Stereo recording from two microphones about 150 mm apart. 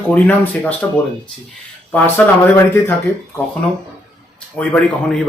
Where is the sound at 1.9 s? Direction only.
15° left (ahead or behind).